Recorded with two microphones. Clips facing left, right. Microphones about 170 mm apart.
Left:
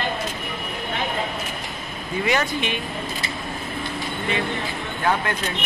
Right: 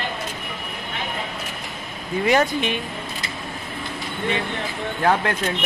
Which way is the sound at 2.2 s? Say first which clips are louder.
Right 4 dB; 45° right (ahead or behind).